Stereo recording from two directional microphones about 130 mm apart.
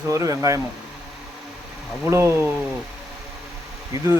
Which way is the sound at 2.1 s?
20° right (ahead or behind).